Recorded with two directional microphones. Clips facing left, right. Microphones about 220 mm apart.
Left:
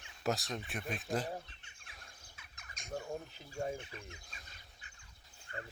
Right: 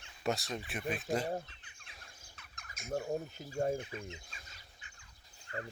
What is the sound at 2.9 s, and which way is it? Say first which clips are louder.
Speech: right 5 dB; 45° right (ahead or behind).